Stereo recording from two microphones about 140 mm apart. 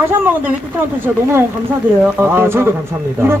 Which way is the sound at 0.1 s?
15° right (ahead or behind).